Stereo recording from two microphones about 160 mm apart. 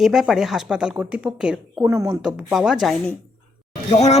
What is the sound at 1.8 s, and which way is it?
Speech, 15° right (ahead or behind).